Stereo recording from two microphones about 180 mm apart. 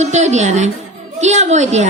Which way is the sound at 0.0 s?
40° right (ahead or behind).